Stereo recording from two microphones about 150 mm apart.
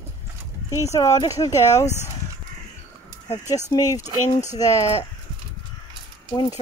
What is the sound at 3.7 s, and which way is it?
Speech, 25° left (ahead or behind).